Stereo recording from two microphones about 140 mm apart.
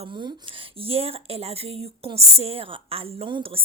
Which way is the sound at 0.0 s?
35° right (ahead or behind).